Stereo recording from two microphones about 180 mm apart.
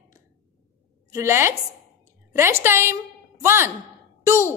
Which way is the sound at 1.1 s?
15° right (ahead or behind).